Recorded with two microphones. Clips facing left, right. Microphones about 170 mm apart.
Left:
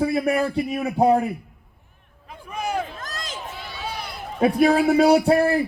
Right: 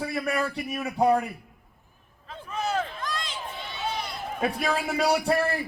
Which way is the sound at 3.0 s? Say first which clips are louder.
Right 1 dB; 45° left (ahead or behind).